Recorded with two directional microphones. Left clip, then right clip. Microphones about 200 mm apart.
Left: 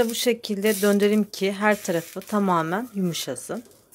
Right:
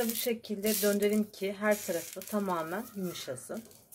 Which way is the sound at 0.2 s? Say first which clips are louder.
Left 10 dB; 45° left (ahead or behind).